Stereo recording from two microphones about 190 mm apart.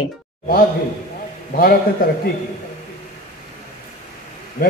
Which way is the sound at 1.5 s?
50° left (ahead or behind).